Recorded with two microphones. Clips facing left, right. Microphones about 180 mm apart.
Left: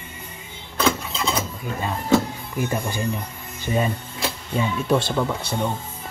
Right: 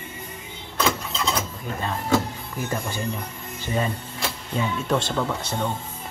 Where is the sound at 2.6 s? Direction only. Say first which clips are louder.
Left 3 dB; 15° left (ahead or behind).